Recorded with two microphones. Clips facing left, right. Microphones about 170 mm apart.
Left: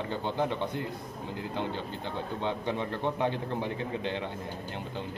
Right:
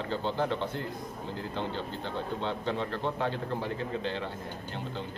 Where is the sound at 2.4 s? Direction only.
15° left (ahead or behind).